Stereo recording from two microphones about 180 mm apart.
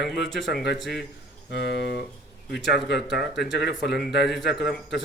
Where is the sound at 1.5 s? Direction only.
65° left (ahead or behind).